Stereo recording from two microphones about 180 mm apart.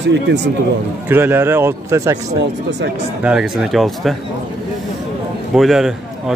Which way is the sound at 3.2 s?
5° right (ahead or behind).